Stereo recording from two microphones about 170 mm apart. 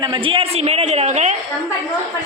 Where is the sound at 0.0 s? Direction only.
30° right (ahead or behind).